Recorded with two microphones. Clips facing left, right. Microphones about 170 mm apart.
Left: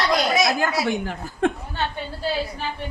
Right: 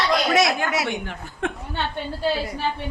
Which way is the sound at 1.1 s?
35° left (ahead or behind).